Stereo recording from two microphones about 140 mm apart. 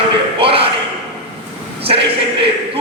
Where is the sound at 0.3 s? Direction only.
40° right (ahead or behind).